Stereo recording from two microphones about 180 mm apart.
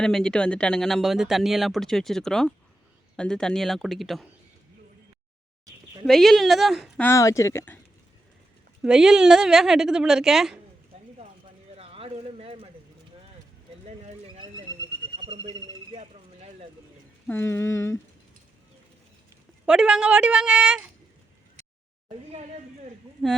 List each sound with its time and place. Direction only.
0.0 s speech: 5° left (ahead or behind)
5.6 s a sound: 20° right (ahead or behind)
6.1 s speech: centre (ahead or behind)
7.0 s speech: 15° left (ahead or behind)
8.8 s speech: 5° right (ahead or behind)
11.8 s a sound: 30° right (ahead or behind)
15.2 s a sound: 25° right (ahead or behind)
17.2 s speech: 15° left (ahead or behind)
19.6 s speech: 5° right (ahead or behind)